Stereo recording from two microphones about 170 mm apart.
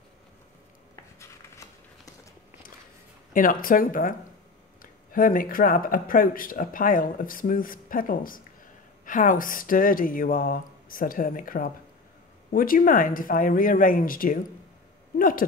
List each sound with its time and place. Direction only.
3.3 s speech: 55° left (ahead or behind)
5.1 s speech: 55° left (ahead or behind)